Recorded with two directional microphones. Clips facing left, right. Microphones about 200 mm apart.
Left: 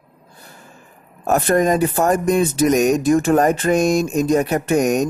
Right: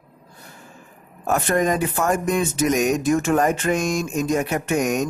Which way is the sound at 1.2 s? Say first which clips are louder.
Left 4 dB; 40° left (ahead or behind).